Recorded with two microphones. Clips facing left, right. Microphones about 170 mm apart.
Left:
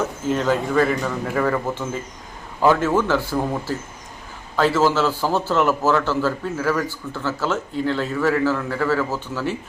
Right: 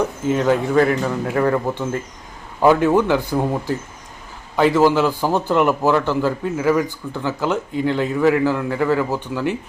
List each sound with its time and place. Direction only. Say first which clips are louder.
0.0 s a man's voice: right 3 dB; 15° right (ahead or behind)